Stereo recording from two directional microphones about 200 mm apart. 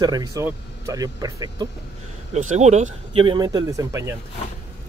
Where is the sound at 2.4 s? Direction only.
35° right (ahead or behind); by 4.1 s 15° right (ahead or behind).